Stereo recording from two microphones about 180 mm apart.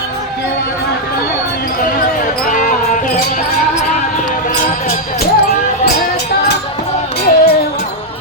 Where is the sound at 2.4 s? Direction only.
45° left (ahead or behind).